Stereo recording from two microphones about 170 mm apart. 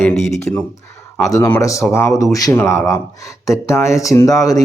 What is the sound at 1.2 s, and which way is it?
Speech, 15° left (ahead or behind).